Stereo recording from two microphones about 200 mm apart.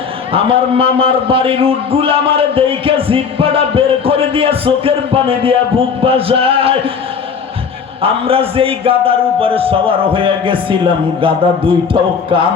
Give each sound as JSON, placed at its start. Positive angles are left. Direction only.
{"t": 0.3, "sound": "a man's voice", "side_deg": -25}
{"t": 8.0, "sound": "a man's voice", "side_deg": -30}